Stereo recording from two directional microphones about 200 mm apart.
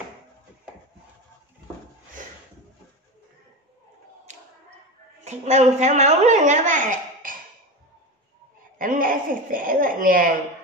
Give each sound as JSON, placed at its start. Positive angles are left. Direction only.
{"t": 5.2, "sound": "a woman's voice", "side_deg": -35}
{"t": 8.7, "sound": "speech", "side_deg": -45}